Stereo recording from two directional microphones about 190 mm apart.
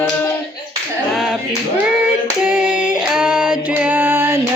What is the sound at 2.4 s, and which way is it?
Female singing, 10° right (ahead or behind).